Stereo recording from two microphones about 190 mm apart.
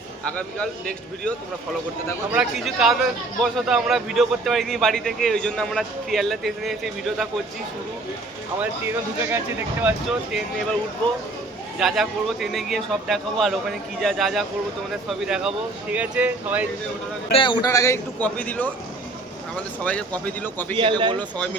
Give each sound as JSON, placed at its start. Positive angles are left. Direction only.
{"t": 2.3, "sound": "a man's voice", "side_deg": -5}
{"t": 9.3, "sound": "speech", "side_deg": -10}
{"t": 11.8, "sound": "a man's voice", "side_deg": 0}
{"t": 17.3, "sound": "a man's voice", "side_deg": 25}
{"t": 20.7, "sound": "speech", "side_deg": -25}